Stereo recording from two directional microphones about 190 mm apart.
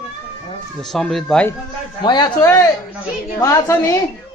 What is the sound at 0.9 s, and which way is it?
Speech, 5° left (ahead or behind).